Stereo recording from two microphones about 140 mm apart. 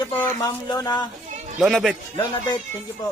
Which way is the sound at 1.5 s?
Centre (ahead or behind).